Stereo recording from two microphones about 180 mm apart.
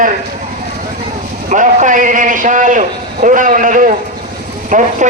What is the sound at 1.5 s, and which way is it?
A man's voice, 45° right (ahead or behind).